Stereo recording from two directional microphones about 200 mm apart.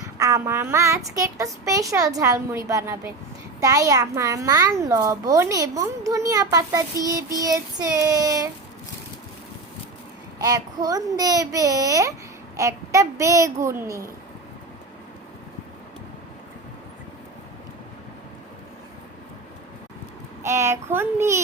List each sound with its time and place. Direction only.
0.2 s a child's voice: 15° right (ahead or behind)
10.3 s a child's voice: 20° right (ahead or behind)
20.4 s a child's voice: 15° right (ahead or behind)